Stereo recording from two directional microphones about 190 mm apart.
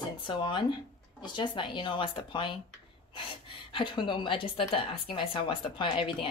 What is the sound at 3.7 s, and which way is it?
Speech, 25° left (ahead or behind).